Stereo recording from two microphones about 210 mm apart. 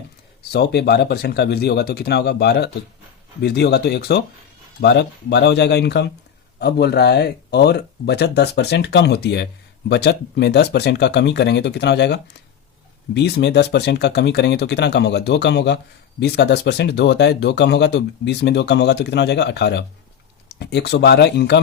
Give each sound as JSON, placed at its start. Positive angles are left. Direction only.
{"t": 0.5, "sound": "speech", "side_deg": 50}